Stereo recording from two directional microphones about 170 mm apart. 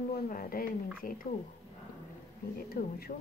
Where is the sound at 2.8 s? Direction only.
55° left (ahead or behind).